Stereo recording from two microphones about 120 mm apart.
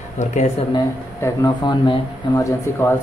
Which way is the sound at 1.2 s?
25° left (ahead or behind).